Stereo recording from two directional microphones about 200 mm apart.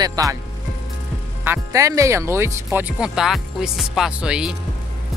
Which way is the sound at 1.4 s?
15° right (ahead or behind).